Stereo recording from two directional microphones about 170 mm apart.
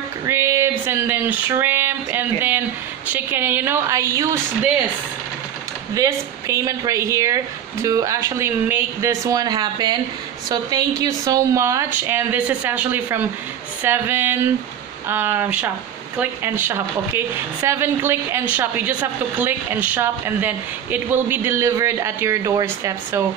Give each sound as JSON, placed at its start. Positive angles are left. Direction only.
{"t": 0.3, "sound": "a sound", "side_deg": -15}
{"t": 3.1, "sound": "a woman's voice", "side_deg": -10}
{"t": 5.9, "sound": "speech", "side_deg": -20}
{"t": 11.0, "sound": "a woman's voice", "side_deg": -20}